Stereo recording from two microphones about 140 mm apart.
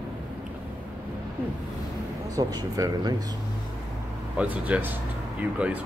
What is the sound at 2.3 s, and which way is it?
Speech, 25° right (ahead or behind).